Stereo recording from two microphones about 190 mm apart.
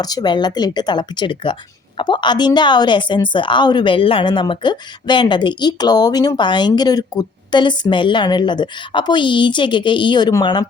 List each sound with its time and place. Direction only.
0.0 s a woman's voice: 20° left (ahead or behind)